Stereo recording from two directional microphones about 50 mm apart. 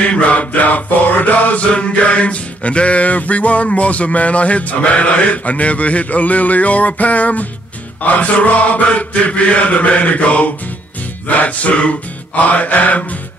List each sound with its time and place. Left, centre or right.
0.0 s mantra: left
12.4 s music: left